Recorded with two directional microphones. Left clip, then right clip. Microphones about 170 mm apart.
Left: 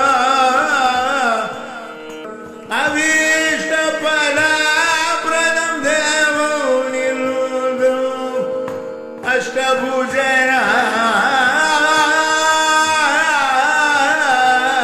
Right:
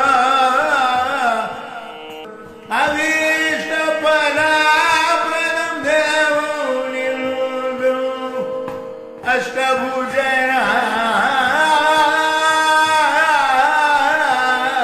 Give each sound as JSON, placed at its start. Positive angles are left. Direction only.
{"t": 0.0, "sound": "music", "side_deg": 20}
{"t": 2.7, "sound": "music", "side_deg": 25}
{"t": 9.2, "sound": "music", "side_deg": 20}